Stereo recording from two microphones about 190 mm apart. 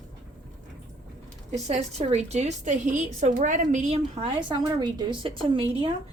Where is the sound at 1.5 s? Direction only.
35° right (ahead or behind).